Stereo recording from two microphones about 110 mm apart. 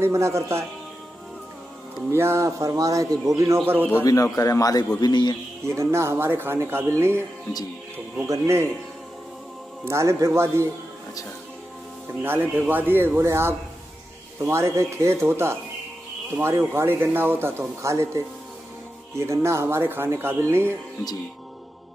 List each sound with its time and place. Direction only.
0.0 s speech: 25° right (ahead or behind)
2.0 s speech: 25° right (ahead or behind)
4.0 s a man's voice: 30° left (ahead or behind)
5.7 s speech: 25° right (ahead or behind)
8.3 s speech: 25° right (ahead or behind)
9.8 s speech: 25° right (ahead or behind)
12.2 s speech: 20° right (ahead or behind)